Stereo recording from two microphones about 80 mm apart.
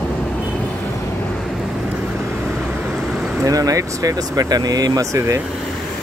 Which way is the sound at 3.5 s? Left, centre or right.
Right.